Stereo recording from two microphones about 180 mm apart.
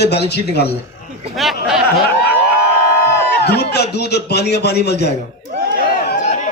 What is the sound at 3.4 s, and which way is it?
A man's voice, 65° left (ahead or behind).